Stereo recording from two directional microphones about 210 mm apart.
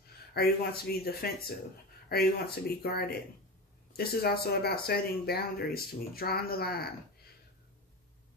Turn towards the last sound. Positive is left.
turn(degrees=45)  # may be behind; listen again after turning